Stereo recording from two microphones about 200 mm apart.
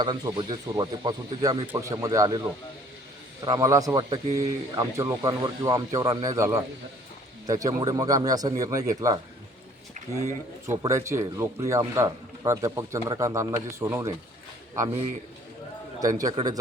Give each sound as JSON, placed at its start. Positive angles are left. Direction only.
{"t": 0.0, "sound": "speech", "side_deg": -20}
{"t": 3.4, "sound": "speech", "side_deg": -20}
{"t": 10.8, "sound": "speech", "side_deg": -15}
{"t": 16.0, "sound": "speech", "side_deg": -15}